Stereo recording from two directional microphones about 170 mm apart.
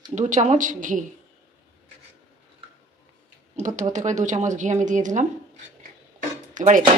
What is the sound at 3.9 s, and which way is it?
Speech, 45° right (ahead or behind).